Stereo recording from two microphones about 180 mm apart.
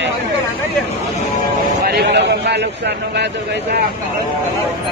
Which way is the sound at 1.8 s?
65° right (ahead or behind).